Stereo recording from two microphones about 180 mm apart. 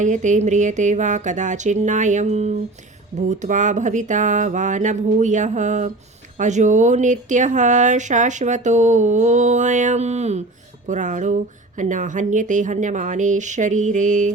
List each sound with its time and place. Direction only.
0.0 s speech: 45° right (ahead or behind)